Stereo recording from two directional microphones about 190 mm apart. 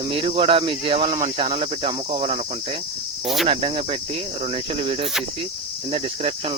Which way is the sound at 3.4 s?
30° right (ahead or behind).